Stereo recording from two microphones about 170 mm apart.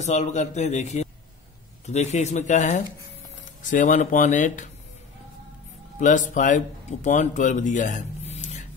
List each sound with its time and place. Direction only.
0.0 s a man's voice: 40° left (ahead or behind)
5.9 s speech: 45° left (ahead or behind)